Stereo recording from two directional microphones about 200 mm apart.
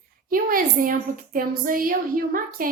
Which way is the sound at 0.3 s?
45° right (ahead or behind).